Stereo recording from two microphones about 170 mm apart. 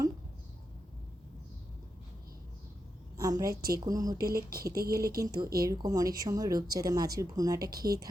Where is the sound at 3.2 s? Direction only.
20° right (ahead or behind).